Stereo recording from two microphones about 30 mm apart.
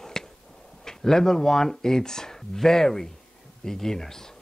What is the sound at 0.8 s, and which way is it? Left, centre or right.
Speech, centre.